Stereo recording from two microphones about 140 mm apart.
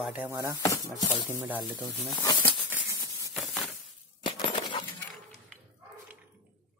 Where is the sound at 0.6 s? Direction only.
25° left (ahead or behind).